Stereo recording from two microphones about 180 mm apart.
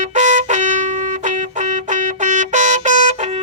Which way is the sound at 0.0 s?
40° right (ahead or behind).